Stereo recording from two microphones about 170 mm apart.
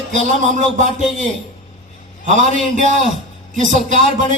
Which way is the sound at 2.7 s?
50° right (ahead or behind).